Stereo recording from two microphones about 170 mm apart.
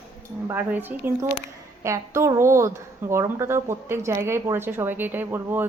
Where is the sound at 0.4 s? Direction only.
10° right (ahead or behind).